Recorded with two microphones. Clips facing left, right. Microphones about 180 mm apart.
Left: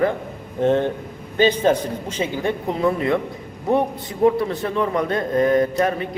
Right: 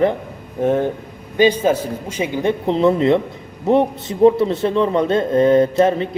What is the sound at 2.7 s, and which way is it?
A man's voice, 25° right (ahead or behind).